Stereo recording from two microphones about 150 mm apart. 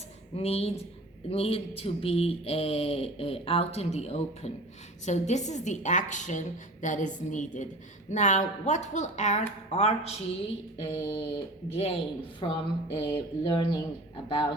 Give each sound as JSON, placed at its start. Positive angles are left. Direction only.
{"t": 0.3, "sound": "a woman's voice", "side_deg": 40}
{"t": 10.8, "sound": "speech", "side_deg": 35}